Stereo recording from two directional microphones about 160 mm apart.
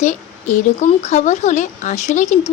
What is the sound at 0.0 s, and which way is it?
Speech, 50° left (ahead or behind).